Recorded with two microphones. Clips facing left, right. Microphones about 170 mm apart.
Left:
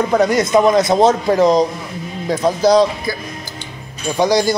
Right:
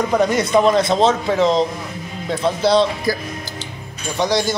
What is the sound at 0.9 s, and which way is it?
Speech, 10° left (ahead or behind).